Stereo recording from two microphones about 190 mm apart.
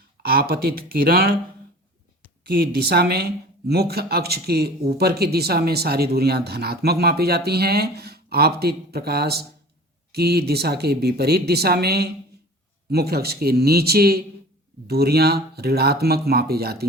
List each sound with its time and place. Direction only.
0.3 s speech: 55° right (ahead or behind)
2.5 s speech: 55° right (ahead or behind)